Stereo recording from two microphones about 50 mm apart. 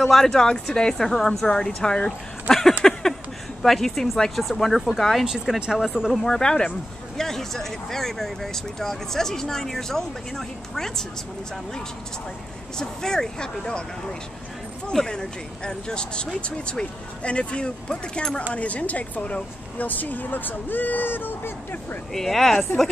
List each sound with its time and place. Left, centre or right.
0.0 s speech: centre
2.8 s a sound: centre
3.6 s speech: centre
5.2 s speech: centre
6.2 s speech: centre
12.7 s speech: centre
14.9 s a woman's voice: centre; by 21.5 s left
22.1 s speech: centre